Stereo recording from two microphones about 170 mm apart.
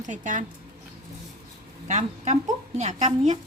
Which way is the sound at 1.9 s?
45° right (ahead or behind).